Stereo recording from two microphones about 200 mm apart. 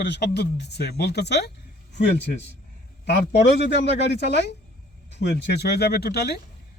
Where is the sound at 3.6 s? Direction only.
60° left (ahead or behind).